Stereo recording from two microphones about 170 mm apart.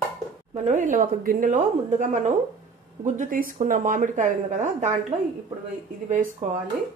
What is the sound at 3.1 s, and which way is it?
Speech, 55° right (ahead or behind).